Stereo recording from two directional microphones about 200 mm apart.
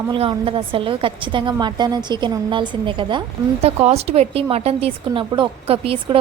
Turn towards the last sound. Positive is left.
turn(degrees=-25)  # may be behind; listen again after turning